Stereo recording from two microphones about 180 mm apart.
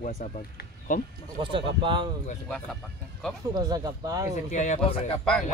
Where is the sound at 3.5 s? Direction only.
20° right (ahead or behind).